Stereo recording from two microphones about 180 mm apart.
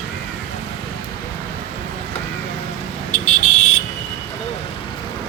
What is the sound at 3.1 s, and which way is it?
Buzzer, 45° left (ahead or behind).